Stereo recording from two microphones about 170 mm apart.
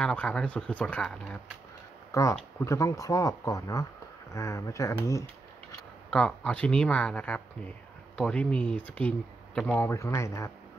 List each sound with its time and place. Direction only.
0.0 s speech: 5° left (ahead or behind)
2.1 s speech: 20° left (ahead or behind)
6.0 s speech: 5° left (ahead or behind)